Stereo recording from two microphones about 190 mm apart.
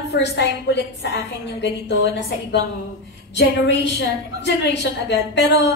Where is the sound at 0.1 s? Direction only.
65° left (ahead or behind).